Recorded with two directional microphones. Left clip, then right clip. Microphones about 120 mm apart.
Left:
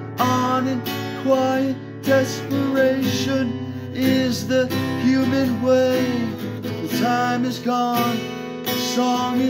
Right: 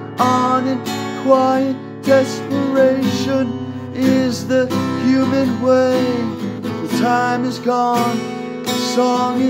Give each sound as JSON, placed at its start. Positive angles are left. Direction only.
{"t": 0.3, "sound": "music", "side_deg": -20}
{"t": 7.9, "sound": "music", "side_deg": -40}
{"t": 8.7, "sound": "music", "side_deg": -15}